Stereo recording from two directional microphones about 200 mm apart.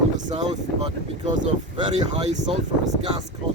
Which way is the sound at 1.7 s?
25° right (ahead or behind).